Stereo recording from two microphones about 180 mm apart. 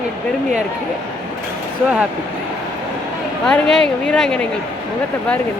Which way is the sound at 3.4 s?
5° left (ahead or behind).